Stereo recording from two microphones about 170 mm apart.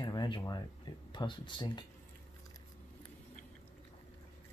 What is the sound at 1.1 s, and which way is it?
Speech, 25° left (ahead or behind).